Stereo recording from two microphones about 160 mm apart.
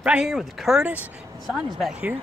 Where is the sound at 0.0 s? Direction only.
5° right (ahead or behind).